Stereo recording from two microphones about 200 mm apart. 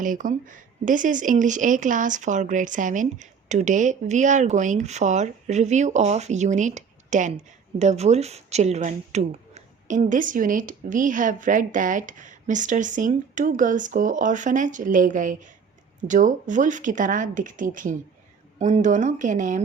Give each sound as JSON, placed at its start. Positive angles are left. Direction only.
{"t": 0.0, "sound": "speech", "side_deg": -40}